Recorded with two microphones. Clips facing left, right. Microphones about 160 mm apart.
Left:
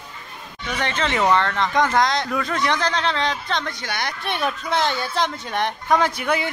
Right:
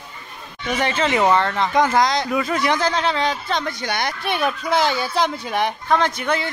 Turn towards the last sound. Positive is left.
turn(degrees=10)  # may be behind; listen again after turning